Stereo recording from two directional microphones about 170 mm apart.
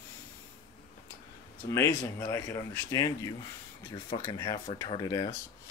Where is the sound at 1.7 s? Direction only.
15° left (ahead or behind).